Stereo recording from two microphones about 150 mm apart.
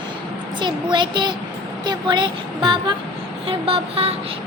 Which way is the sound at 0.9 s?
30° right (ahead or behind).